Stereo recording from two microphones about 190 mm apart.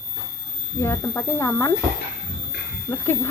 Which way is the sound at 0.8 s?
15° left (ahead or behind).